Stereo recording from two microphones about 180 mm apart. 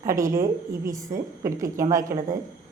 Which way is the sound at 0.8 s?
20° right (ahead or behind).